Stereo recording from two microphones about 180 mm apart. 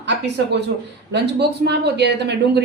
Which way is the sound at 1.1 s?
65° right (ahead or behind).